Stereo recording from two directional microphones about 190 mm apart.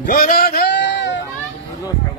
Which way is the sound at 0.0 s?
50° left (ahead or behind).